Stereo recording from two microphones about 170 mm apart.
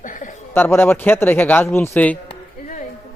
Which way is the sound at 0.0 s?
50° left (ahead or behind).